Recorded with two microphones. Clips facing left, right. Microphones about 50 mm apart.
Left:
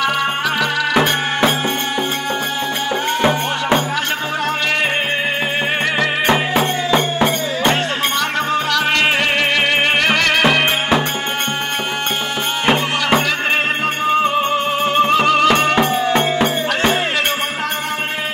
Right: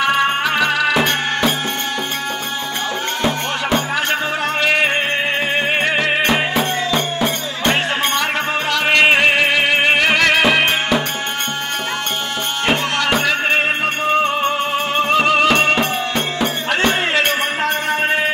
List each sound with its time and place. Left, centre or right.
0.0 s music: centre
3.2 s music: left
8.7 s music: centre
15.0 s music: centre